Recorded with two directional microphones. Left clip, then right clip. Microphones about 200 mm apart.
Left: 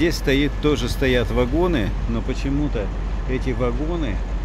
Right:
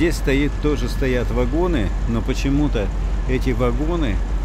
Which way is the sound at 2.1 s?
25° right (ahead or behind).